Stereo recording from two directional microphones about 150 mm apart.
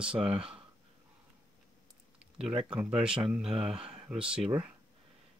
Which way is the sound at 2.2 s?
5° right (ahead or behind).